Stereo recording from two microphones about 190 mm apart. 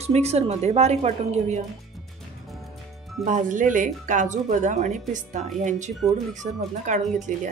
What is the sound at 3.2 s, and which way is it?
Speech, 40° right (ahead or behind).